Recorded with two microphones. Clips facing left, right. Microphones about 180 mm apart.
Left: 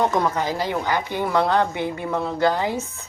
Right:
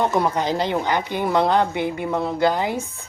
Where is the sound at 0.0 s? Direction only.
10° right (ahead or behind).